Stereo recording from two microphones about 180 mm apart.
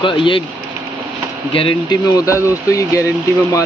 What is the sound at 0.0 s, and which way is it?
Speech, 30° left (ahead or behind).